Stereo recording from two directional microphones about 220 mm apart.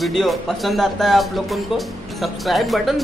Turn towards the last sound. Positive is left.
turn(degrees=0)  # may be behind; listen again after turning